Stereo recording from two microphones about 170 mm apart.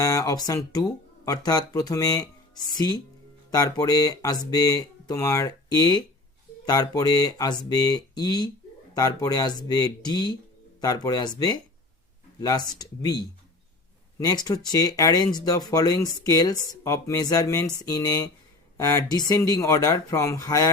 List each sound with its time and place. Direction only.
0.0 s speech: 20° left (ahead or behind)